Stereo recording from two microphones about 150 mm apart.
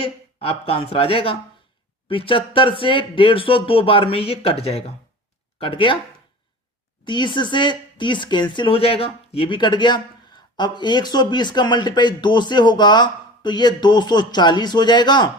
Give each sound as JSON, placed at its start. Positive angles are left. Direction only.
{"t": 0.0, "sound": "speech", "side_deg": 40}
{"t": 7.0, "sound": "speech", "side_deg": 30}